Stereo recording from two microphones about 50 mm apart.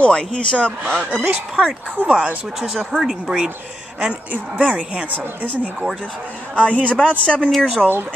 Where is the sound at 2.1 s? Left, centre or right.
Right.